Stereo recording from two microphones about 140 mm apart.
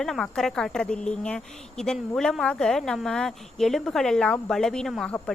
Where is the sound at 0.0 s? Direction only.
Centre (ahead or behind).